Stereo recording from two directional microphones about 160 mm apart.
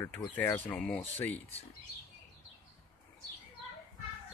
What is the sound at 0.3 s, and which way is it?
Speech, 10° left (ahead or behind).